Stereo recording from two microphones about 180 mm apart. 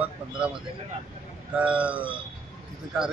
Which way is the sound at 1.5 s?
5° right (ahead or behind).